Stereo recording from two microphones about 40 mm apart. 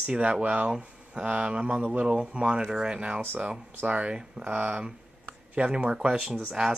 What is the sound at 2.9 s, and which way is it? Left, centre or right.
Speech, right.